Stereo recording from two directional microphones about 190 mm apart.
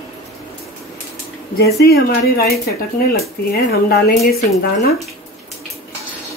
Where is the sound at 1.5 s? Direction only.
55° left (ahead or behind).